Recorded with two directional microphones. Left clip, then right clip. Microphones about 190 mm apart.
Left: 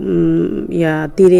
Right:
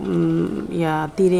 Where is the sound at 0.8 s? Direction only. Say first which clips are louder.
Left 7 dB; 15° left (ahead or behind).